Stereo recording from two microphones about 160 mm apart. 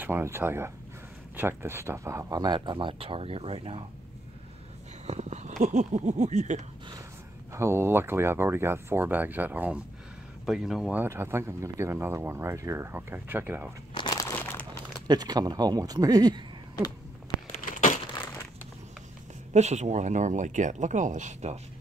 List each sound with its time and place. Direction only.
0.0 s speech: 15° right (ahead or behind); by 3.8 s 35° right (ahead or behind)
5.0 s a sound: 45° right (ahead or behind)
5.6 s speech: 50° right (ahead or behind)
7.5 s speech: 15° right (ahead or behind)
11.0 s speech: 15° right (ahead or behind)
13.9 s crumpling: 25° left (ahead or behind)
14.2 s crumpling: 10° left (ahead or behind)
15.0 s speech: 25° right (ahead or behind)
17.5 s a sound: 50° left (ahead or behind)
19.5 s speech: 45° right (ahead or behind)